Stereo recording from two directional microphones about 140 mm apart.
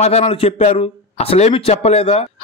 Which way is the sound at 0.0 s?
50° left (ahead or behind).